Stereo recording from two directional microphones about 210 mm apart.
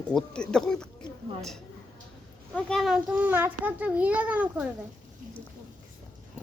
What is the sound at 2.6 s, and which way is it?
A child's voice, 5° left (ahead or behind).